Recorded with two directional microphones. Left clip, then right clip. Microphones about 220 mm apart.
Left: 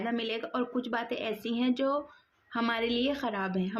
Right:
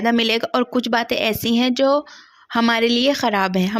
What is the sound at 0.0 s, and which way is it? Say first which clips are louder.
A woman's voice: right 15 dB; 45° right (ahead or behind).